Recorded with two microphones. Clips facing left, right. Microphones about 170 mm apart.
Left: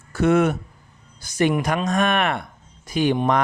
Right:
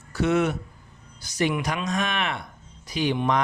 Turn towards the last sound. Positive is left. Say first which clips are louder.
# left 4 dB
turn(degrees=45)  # may be behind; listen again after turning